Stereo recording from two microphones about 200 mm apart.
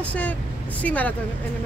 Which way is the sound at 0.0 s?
5° left (ahead or behind).